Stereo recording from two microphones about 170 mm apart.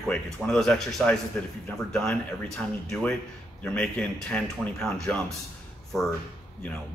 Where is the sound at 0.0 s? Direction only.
Centre (ahead or behind).